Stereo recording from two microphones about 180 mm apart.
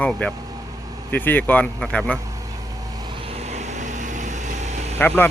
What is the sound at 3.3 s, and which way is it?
Vehicle, 35° right (ahead or behind).